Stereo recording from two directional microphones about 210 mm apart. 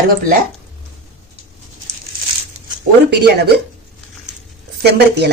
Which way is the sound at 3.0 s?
55° right (ahead or behind).